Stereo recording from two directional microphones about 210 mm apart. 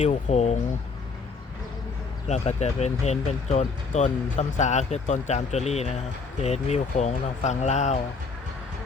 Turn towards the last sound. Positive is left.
turn(degrees=35)  # may be behind; listen again after turning